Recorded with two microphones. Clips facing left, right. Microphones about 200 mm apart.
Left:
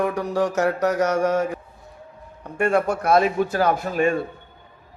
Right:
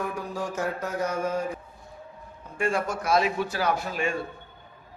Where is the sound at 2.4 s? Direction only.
65° left (ahead or behind); by 4.1 s 45° left (ahead or behind).